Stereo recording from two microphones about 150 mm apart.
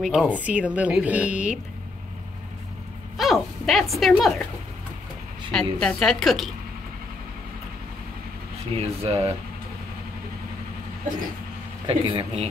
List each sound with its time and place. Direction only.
0.0 s speech: 5° right (ahead or behind)
3.2 s speech: centre (ahead or behind)
5.5 s a woman's voice: 5° left (ahead or behind)
8.7 s speech: 40° right (ahead or behind)
11.9 s speech: 35° right (ahead or behind)